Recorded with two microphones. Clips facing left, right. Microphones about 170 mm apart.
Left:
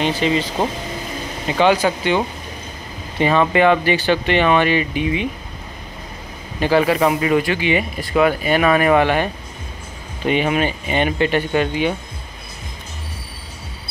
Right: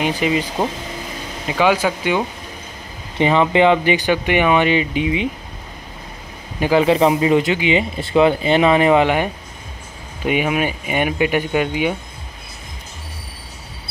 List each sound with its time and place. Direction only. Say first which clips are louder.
0.0 s speech: even; 10° right (ahead or behind)
1.5 s speech: left 1 dB; 5° right (ahead or behind)
3.2 s speech: right 1 dB; 20° right (ahead or behind)
6.6 s speech: right 2 dB; 20° right (ahead or behind)